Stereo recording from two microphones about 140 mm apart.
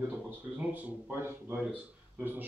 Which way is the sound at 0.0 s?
10° right (ahead or behind).